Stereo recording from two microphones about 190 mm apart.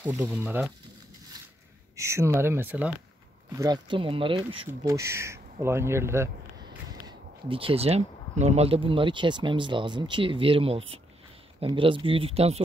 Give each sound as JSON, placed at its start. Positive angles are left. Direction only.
{"t": 0.0, "sound": "speech", "side_deg": -10}
{"t": 2.0, "sound": "speech", "side_deg": -15}
{"t": 3.5, "sound": "speech", "side_deg": -20}
{"t": 4.6, "sound": "speech", "side_deg": -15}